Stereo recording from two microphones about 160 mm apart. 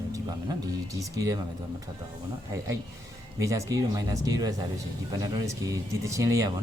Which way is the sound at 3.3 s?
20° right (ahead or behind).